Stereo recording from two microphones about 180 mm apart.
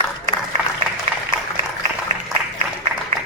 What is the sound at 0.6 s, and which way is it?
Applause, 10° right (ahead or behind).